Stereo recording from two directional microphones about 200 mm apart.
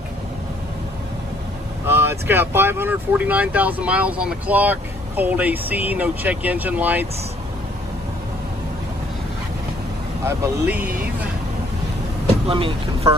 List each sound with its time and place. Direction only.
1.9 s speech: 10° right (ahead or behind)
10.2 s speech: 10° right (ahead or behind)
12.4 s speech: 25° right (ahead or behind)